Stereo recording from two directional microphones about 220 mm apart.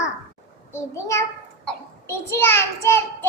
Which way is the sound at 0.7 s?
15° left (ahead or behind).